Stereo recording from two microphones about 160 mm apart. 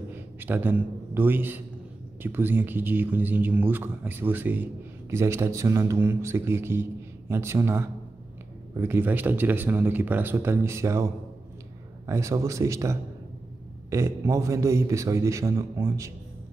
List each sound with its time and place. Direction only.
0.4 s a man's voice: 10° right (ahead or behind)
12.1 s a man's voice: 20° right (ahead or behind)